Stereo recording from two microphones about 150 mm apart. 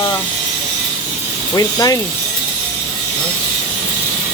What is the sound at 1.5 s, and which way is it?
Speech, 25° left (ahead or behind).